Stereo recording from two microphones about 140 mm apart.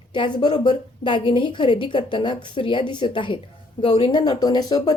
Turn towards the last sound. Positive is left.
turn(degrees=30)  # may be behind; listen again after turning